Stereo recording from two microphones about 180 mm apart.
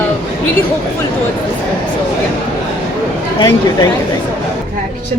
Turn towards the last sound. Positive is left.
turn(degrees=20)  # may be behind; listen again after turning